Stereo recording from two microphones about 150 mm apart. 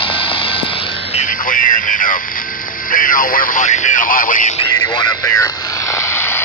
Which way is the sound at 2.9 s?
65° left (ahead or behind).